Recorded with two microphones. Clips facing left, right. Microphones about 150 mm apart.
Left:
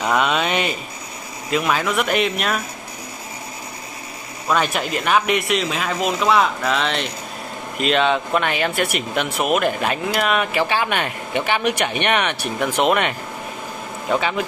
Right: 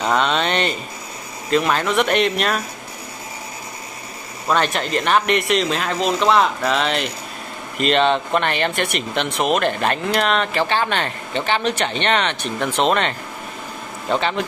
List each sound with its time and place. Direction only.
0.0 s speech: 5° left (ahead or behind)
4.5 s speech: 5° left (ahead or behind)